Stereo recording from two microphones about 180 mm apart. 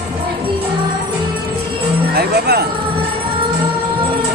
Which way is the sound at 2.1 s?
60° right (ahead or behind).